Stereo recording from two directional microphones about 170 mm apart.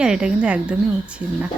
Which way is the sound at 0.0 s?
5° right (ahead or behind).